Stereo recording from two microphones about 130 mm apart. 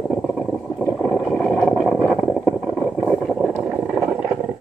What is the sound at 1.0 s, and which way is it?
Boat, centre (ahead or behind).